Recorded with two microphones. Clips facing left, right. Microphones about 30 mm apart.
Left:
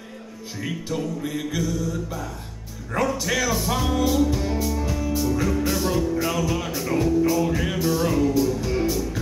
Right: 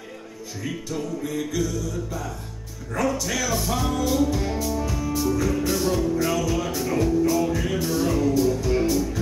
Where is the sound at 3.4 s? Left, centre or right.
Centre.